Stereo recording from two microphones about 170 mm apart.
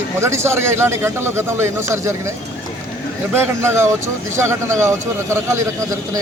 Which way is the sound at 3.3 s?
15° right (ahead or behind).